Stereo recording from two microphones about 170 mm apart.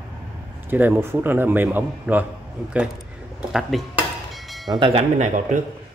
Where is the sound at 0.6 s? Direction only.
10° right (ahead or behind).